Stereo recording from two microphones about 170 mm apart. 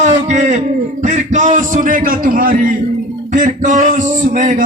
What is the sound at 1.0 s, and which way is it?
A man's voice, 45° right (ahead or behind).